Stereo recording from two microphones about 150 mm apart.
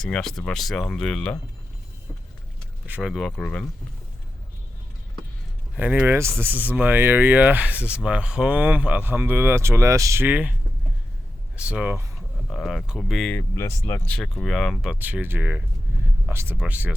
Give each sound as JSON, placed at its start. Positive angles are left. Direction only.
{"t": 0.0, "sound": "speech", "side_deg": 5}
{"t": 2.8, "sound": "speech", "side_deg": -10}
{"t": 5.7, "sound": "speech", "side_deg": -10}
{"t": 11.5, "sound": "speech", "side_deg": -10}
{"t": 12.5, "sound": "speech", "side_deg": 0}
{"t": 13.5, "sound": "speech", "side_deg": 20}
{"t": 14.2, "sound": "speech", "side_deg": 0}